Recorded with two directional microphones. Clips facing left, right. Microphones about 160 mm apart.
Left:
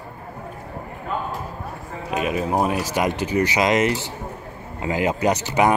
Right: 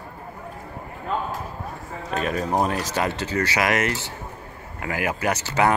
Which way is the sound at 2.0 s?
10° left (ahead or behind).